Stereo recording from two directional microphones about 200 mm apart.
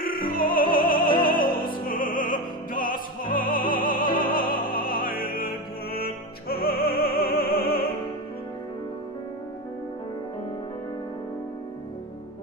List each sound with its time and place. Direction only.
0.3 s music: 45° left (ahead or behind)
1.7 s opera: 45° left (ahead or behind)
6.9 s music: 50° left (ahead or behind)